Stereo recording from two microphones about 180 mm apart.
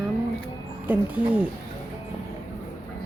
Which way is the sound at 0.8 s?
10° right (ahead or behind).